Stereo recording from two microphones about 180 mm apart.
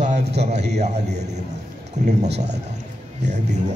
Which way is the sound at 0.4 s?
40° right (ahead or behind).